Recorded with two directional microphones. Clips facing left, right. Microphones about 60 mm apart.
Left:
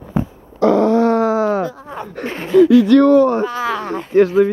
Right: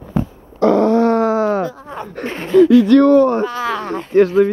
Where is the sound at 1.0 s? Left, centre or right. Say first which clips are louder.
Even; right.